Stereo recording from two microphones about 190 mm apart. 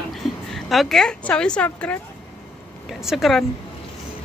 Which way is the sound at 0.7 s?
Centre (ahead or behind).